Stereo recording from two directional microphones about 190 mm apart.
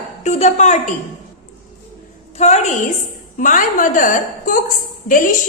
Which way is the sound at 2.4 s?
35° left (ahead or behind).